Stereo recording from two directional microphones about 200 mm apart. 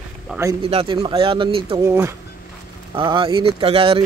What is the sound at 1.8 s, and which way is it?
Speech, 15° right (ahead or behind).